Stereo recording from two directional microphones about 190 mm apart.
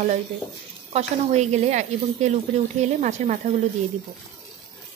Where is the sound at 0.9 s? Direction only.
35° right (ahead or behind).